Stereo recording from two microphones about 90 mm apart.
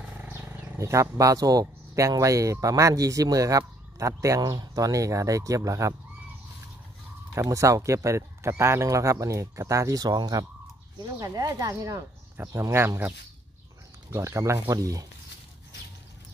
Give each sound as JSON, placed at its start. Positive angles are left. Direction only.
{"t": 0.2, "sound": "speech", "side_deg": -25}
{"t": 7.3, "sound": "speech", "side_deg": -35}
{"t": 14.1, "sound": "speech", "side_deg": -35}